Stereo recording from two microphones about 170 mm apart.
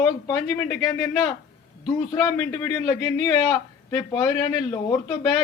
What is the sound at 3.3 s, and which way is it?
A man's voice, 20° left (ahead or behind).